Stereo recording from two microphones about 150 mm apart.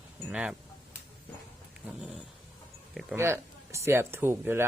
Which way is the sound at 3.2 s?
15° right (ahead or behind).